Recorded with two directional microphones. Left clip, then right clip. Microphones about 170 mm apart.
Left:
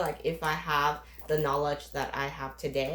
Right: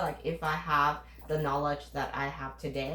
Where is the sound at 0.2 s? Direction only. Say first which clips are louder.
Left 2 dB; 50° left (ahead or behind).